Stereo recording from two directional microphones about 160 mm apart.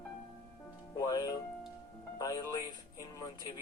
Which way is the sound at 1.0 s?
25° left (ahead or behind).